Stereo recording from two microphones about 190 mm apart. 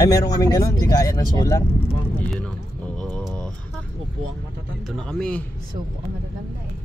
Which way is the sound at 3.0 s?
5° left (ahead or behind).